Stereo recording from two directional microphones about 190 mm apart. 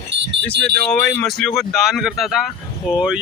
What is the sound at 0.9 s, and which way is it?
Speech, 5° left (ahead or behind).